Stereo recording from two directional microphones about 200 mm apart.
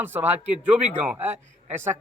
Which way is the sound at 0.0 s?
10° right (ahead or behind).